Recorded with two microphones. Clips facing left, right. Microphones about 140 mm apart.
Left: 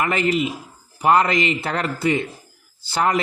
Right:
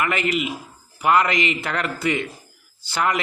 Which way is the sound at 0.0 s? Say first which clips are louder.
Left 3 dB; 35° left (ahead or behind).